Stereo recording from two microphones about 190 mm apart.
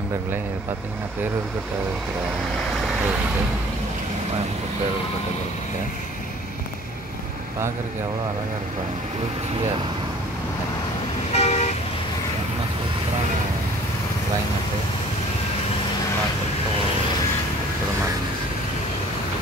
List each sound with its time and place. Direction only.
11.3 s vehicle: 35° left (ahead or behind)